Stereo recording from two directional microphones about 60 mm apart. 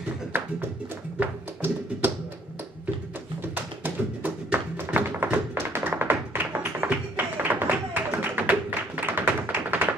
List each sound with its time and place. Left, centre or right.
0.3 s tap: right
3.5 s tap: right
6.8 s flamenco: right